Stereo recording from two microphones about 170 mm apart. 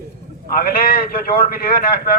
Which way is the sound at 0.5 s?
60° left (ahead or behind).